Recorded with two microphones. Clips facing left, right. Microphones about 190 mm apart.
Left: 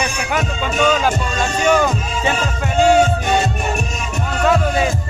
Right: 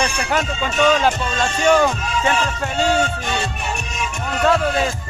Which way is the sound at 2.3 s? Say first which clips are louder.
Left 3 dB; 45° left (ahead or behind).